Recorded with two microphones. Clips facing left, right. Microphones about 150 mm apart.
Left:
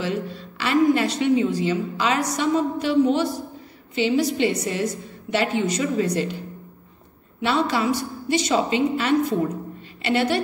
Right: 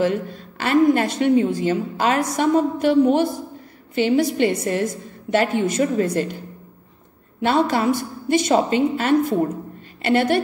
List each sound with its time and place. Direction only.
0.0 s a woman's voice: 50° right (ahead or behind)
7.4 s a woman's voice: 50° right (ahead or behind)